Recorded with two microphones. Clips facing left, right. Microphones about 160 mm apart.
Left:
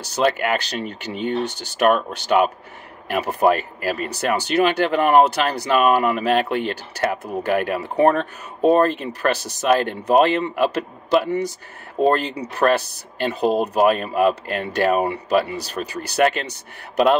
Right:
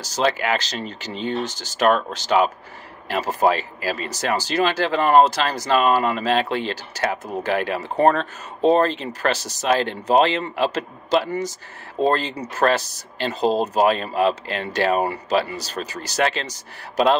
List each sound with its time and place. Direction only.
0.0 s speech: 60° left (ahead or behind)